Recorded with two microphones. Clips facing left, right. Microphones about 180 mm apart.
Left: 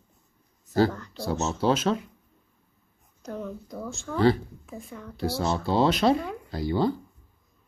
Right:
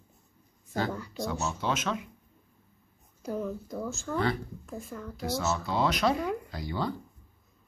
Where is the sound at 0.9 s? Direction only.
10° right (ahead or behind).